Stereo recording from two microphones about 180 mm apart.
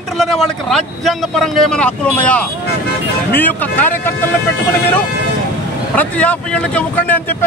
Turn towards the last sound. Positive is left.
turn(degrees=10)  # may be behind; listen again after turning